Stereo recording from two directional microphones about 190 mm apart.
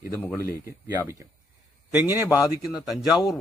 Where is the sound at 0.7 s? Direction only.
15° right (ahead or behind).